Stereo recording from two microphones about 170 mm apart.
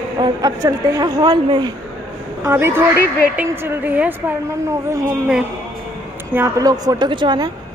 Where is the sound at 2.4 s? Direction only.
15° right (ahead or behind).